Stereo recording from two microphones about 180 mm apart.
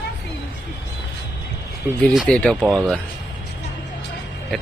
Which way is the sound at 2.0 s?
Centre (ahead or behind).